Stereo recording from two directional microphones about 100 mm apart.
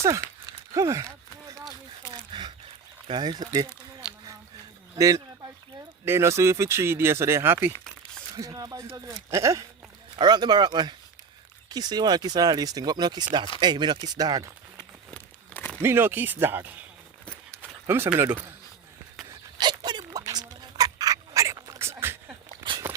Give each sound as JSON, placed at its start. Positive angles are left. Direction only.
{"t": 0.0, "sound": "speech", "side_deg": -30}
{"t": 2.3, "sound": "a sound", "side_deg": -45}
{"t": 3.1, "sound": "speech", "side_deg": -45}
{"t": 4.9, "sound": "speech", "side_deg": -35}
{"t": 8.4, "sound": "speech", "side_deg": -40}
{"t": 10.2, "sound": "speech", "side_deg": -45}
{"t": 15.1, "sound": "crumpling", "side_deg": 15}
{"t": 15.8, "sound": "speech", "side_deg": -20}
{"t": 17.6, "sound": "a sound", "side_deg": -25}
{"t": 18.2, "sound": "speech", "side_deg": -25}
{"t": 19.5, "sound": "a sound", "side_deg": -50}